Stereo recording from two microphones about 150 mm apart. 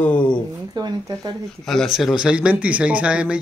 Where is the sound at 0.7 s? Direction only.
25° right (ahead or behind).